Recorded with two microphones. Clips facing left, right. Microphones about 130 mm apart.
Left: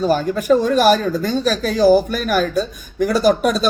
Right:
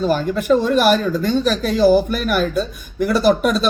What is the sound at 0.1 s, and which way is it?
A man's voice, 45° left (ahead or behind).